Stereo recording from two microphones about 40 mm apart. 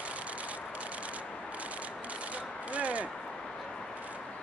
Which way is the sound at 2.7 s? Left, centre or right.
Right.